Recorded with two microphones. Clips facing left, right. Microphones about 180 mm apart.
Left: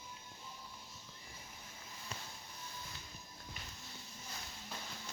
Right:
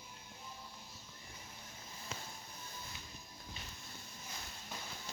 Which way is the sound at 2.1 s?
90° right.